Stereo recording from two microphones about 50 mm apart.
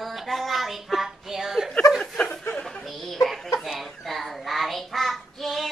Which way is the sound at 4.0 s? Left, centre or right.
Centre.